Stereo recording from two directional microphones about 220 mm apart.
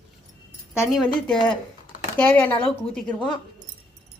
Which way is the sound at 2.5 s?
25° left (ahead or behind).